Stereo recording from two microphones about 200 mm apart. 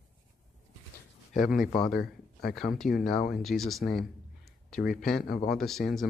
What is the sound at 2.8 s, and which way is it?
Speech, 40° left (ahead or behind).